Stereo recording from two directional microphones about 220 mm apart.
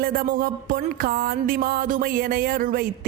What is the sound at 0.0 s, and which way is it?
Music, 40° right (ahead or behind).